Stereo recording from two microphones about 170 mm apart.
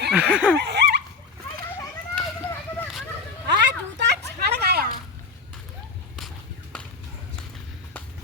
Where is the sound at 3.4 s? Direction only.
90° right; by 4.9 s 70° right (ahead or behind).